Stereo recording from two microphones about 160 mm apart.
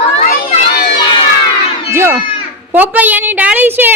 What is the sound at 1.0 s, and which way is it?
Crowd, 30° left (ahead or behind).